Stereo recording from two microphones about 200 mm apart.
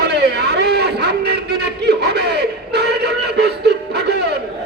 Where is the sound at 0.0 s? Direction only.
55° right (ahead or behind).